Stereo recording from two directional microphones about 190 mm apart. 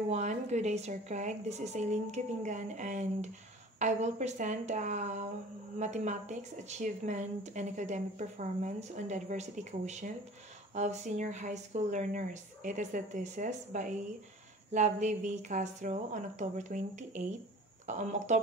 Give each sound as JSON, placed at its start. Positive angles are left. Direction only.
{"t": 0.1, "sound": "speech", "side_deg": -35}